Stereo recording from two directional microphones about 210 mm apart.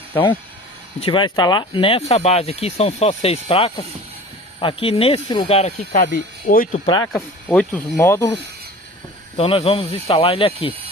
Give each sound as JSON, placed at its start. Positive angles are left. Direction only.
{"t": 0.9, "sound": "speech", "side_deg": 25}
{"t": 7.1, "sound": "speech", "side_deg": 10}
{"t": 9.4, "sound": "speech", "side_deg": 25}